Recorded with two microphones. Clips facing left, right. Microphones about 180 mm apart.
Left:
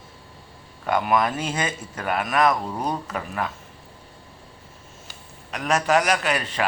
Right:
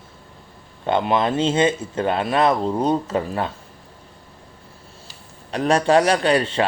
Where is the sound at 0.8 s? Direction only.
25° right (ahead or behind).